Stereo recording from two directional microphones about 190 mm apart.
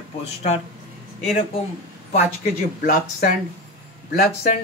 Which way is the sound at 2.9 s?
45° left (ahead or behind).